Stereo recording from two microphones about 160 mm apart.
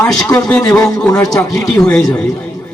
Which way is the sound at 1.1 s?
20° left (ahead or behind).